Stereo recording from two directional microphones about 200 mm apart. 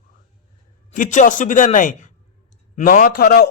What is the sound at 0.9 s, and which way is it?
A man's voice, 40° left (ahead or behind).